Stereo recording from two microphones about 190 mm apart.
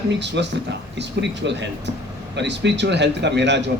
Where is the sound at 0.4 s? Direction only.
70° right (ahead or behind).